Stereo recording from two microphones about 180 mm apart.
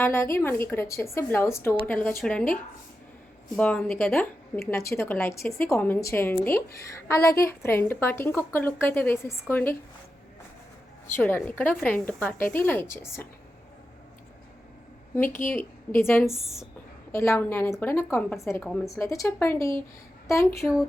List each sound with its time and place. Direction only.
0.0 s a woman's voice: 15° left (ahead or behind)
3.5 s a woman's voice: 5° left (ahead or behind)
11.1 s a woman's voice: 10° left (ahead or behind)
15.1 s a woman's voice: 15° left (ahead or behind)